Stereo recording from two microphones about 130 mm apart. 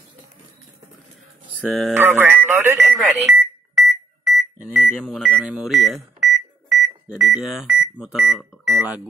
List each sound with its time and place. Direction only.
1.6 s speech: centre (ahead or behind)
2.0 s speech: 15° right (ahead or behind)
2.9 s alarm clock: centre (ahead or behind)
4.6 s a sound: 15° right (ahead or behind)
4.8 s speech: centre (ahead or behind)
6.1 s microwave oven: centre (ahead or behind)
7.1 s speech: 5° right (ahead or behind)